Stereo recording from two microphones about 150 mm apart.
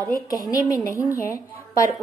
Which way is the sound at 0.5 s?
20° left (ahead or behind).